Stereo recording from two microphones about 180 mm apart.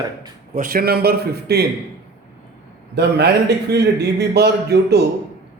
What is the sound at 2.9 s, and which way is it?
A man's voice, 65° right (ahead or behind).